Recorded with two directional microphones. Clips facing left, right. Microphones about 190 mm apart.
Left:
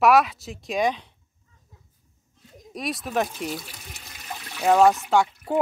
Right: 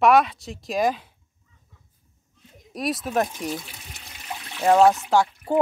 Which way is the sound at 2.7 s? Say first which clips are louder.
Right 2 dB; centre (ahead or behind).